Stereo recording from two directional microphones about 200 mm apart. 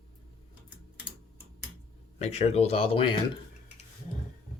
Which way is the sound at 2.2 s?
35° left (ahead or behind).